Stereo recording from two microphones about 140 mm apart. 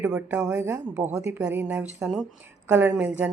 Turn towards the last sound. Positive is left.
turn(degrees=-10)  # may be behind; listen again after turning